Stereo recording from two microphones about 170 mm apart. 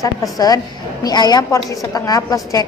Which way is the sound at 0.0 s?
20° left (ahead or behind).